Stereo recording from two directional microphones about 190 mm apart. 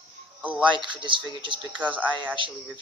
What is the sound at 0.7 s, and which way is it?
Speech, 25° right (ahead or behind).